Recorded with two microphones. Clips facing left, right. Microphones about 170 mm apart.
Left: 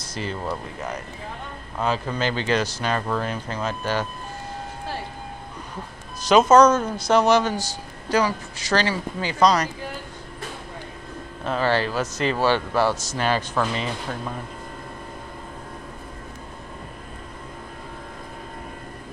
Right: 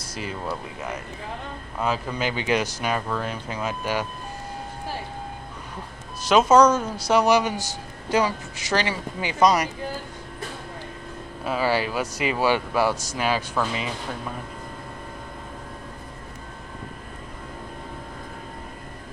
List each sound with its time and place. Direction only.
0.0 s a sound: 10° right (ahead or behind)
0.4 s speech: 5° right (ahead or behind)
3.1 s speech: centre (ahead or behind)
6.2 s speech: 5° right (ahead or behind)
11.4 s speech: 5° right (ahead or behind)